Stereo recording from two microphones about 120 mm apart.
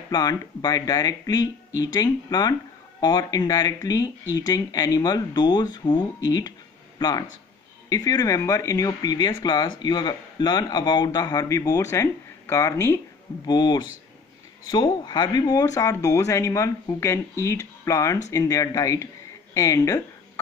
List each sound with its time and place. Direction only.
0.1 s speech: 35° left (ahead or behind)
13.5 s speech: 35° left (ahead or behind)